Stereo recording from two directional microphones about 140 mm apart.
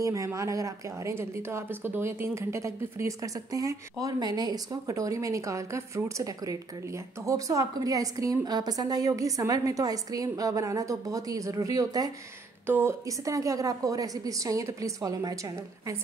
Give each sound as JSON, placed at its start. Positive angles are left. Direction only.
{"t": 0.0, "sound": "speech", "side_deg": -20}